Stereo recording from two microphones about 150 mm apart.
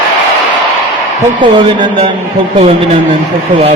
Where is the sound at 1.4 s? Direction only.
35° right (ahead or behind).